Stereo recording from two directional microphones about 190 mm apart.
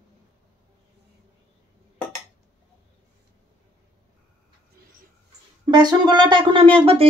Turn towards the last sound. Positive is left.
turn(degrees=-30)  # may be behind; listen again after turning